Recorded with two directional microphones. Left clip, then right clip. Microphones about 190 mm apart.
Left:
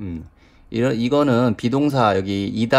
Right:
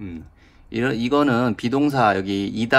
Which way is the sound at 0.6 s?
25° left (ahead or behind).